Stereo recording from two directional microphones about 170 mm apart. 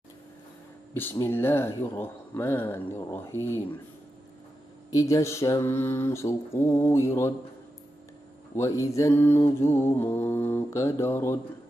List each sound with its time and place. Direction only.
0.9 s mantra: 15° left (ahead or behind)
4.9 s mantra: 20° left (ahead or behind)
8.5 s mantra: 15° left (ahead or behind)